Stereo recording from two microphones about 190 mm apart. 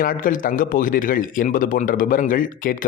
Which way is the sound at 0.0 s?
45° left (ahead or behind).